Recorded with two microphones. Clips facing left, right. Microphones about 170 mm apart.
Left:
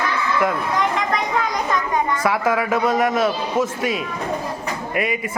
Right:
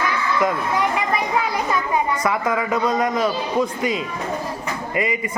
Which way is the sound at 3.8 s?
75° left (ahead or behind).